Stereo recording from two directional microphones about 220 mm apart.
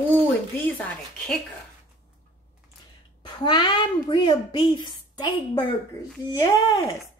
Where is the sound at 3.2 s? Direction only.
20° left (ahead or behind).